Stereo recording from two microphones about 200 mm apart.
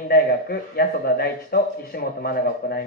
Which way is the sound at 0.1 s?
50° left (ahead or behind).